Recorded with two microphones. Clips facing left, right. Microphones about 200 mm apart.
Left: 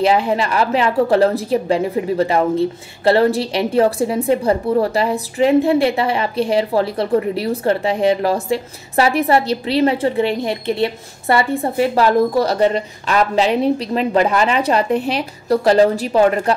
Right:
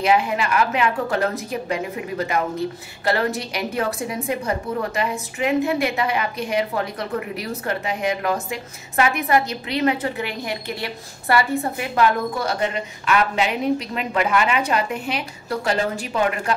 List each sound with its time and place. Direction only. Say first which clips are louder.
0.0 s a woman's voice: left 4 dB; 30° left (ahead or behind)